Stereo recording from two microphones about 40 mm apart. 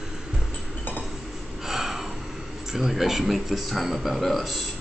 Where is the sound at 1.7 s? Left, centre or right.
Centre.